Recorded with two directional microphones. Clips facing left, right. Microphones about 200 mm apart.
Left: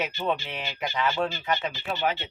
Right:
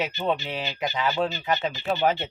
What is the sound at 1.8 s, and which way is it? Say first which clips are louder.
Speech: right 5 dB; 40° right (ahead or behind).